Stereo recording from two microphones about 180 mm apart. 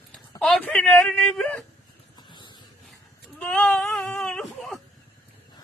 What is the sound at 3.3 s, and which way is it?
Baby cry, 5° left (ahead or behind).